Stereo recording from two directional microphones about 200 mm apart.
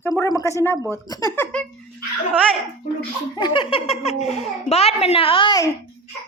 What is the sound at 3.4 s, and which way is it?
A child's voice, 25° left (ahead or behind).